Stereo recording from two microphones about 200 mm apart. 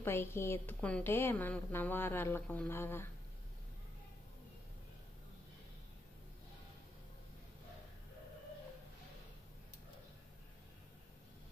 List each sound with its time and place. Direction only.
0.0 s a woman's voice: 10° left (ahead or behind)